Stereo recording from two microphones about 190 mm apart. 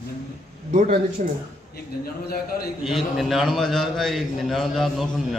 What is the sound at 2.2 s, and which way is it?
Speech, 55° left (ahead or behind).